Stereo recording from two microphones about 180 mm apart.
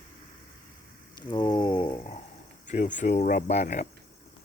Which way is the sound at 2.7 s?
45° left (ahead or behind).